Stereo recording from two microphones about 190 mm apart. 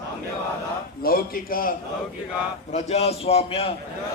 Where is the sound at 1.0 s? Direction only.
50° left (ahead or behind).